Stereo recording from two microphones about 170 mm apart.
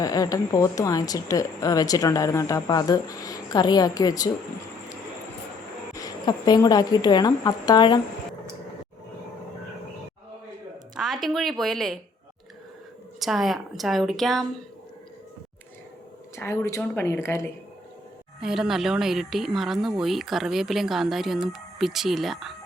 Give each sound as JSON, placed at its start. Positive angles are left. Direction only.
{"t": 0.0, "sound": "a woman's voice", "side_deg": 20}
{"t": 5.9, "sound": "a woman's voice", "side_deg": 20}
{"t": 10.9, "sound": "a woman's voice", "side_deg": 0}
{"t": 13.1, "sound": "speech", "side_deg": 0}
{"t": 16.3, "sound": "a woman's voice", "side_deg": 15}
{"t": 18.3, "sound": "speech", "side_deg": -5}